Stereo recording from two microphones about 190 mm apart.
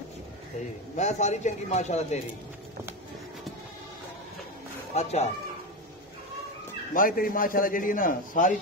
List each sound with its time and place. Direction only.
0.9 s a man's voice: 35° left (ahead or behind)
4.9 s a man's voice: 35° left (ahead or behind)
6.9 s a man's voice: 45° left (ahead or behind)